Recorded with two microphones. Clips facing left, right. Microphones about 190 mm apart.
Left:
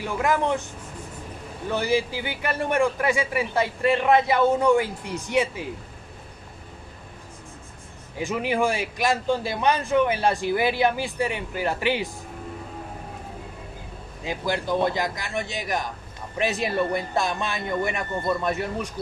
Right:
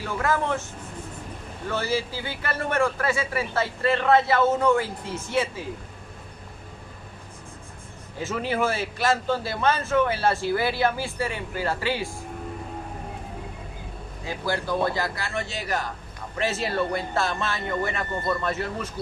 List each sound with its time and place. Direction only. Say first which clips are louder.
0.0 s a man's voice: left 2 dB; 15° left (ahead or behind)
1.7 s a man's voice: left 3 dB; 15° left (ahead or behind)
8.2 s a man's voice: left 2 dB; 15° left (ahead or behind)
14.2 s a man's voice: left 1 dB; 20° left (ahead or behind)